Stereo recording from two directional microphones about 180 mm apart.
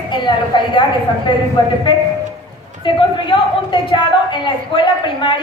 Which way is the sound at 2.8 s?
25° left (ahead or behind).